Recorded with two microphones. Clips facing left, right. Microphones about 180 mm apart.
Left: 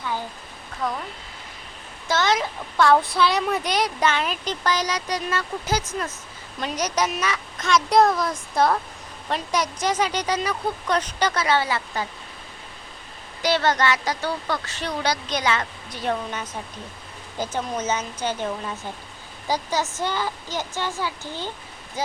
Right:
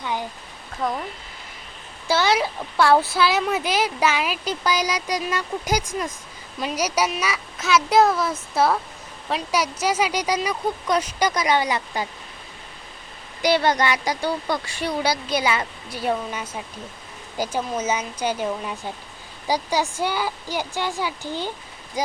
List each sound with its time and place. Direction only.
0.0 s a sound: 15° right (ahead or behind)
2.0 s speech: 10° right (ahead or behind)
13.4 s speech: 10° right (ahead or behind)